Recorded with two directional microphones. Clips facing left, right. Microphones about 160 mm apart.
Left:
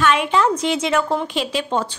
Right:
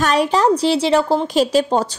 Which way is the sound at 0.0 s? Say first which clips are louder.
Right 2 dB; 40° right (ahead or behind).